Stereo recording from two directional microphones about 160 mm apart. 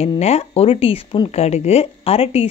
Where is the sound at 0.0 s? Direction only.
40° left (ahead or behind).